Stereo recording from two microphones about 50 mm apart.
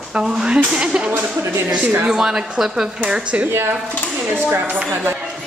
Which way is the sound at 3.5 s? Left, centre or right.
Right.